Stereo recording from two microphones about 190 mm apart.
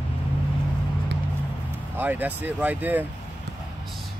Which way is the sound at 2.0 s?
10° right (ahead or behind).